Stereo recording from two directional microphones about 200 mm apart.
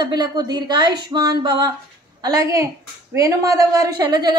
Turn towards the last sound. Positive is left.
turn(degrees=-20)  # may be behind; listen again after turning